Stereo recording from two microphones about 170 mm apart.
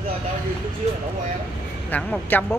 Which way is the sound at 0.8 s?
40° right (ahead or behind).